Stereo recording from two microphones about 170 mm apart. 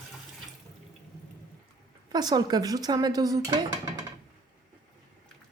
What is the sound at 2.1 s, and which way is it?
Speech, 25° right (ahead or behind).